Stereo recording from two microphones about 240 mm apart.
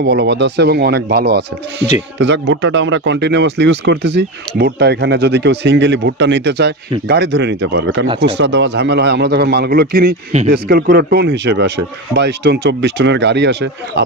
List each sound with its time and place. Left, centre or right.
0.0 s speech: right